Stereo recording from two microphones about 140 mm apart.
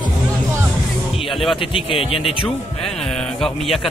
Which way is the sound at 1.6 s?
40° left (ahead or behind).